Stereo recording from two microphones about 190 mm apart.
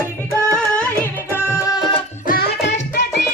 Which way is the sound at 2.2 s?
55° left (ahead or behind).